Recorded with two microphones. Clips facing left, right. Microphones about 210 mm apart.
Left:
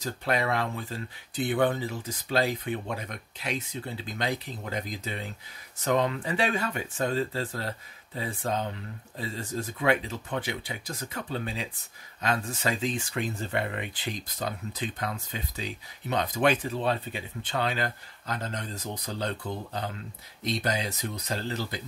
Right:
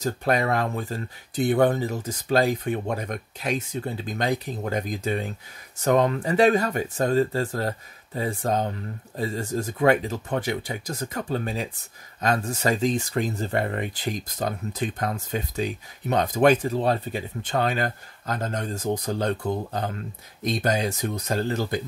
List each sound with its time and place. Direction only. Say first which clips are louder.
0.0 s speech: right 5 dB; 45° right (ahead or behind)